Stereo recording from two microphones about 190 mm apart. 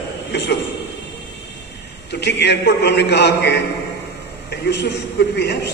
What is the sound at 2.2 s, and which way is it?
A man's voice, 65° left (ahead or behind).